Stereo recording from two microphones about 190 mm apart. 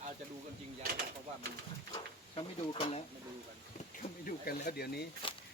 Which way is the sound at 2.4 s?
25° left (ahead or behind).